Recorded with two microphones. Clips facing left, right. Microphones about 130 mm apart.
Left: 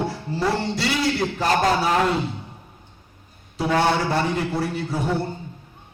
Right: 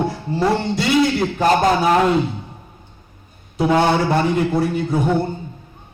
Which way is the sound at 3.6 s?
20° right (ahead or behind).